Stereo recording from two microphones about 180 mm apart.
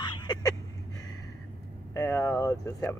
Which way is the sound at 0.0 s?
25° left (ahead or behind).